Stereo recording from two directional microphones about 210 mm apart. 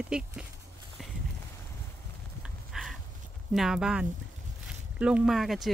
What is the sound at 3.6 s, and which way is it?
Speech, 5° right (ahead or behind).